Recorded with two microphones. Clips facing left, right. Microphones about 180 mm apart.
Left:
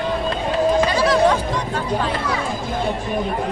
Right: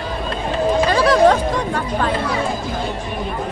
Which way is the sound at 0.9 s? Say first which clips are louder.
Right 3 dB; 55° right (ahead or behind).